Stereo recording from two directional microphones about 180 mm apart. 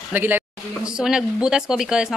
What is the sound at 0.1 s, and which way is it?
Speech, 10° right (ahead or behind).